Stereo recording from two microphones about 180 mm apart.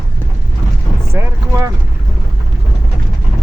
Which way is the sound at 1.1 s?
15° right (ahead or behind).